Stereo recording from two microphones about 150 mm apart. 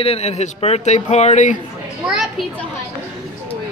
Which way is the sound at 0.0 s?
45° left (ahead or behind).